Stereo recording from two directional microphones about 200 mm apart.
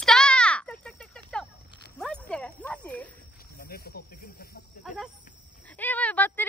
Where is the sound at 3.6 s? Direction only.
50° left (ahead or behind).